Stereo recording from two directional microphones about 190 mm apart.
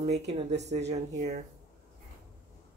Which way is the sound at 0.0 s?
35° right (ahead or behind).